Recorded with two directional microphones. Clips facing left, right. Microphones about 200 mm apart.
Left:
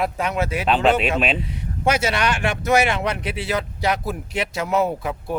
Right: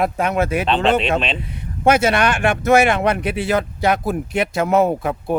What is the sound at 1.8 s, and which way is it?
Speech, 55° right (ahead or behind).